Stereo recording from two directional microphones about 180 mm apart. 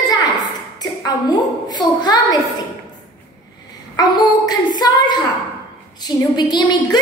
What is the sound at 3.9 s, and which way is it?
A woman's voice, 20° left (ahead or behind).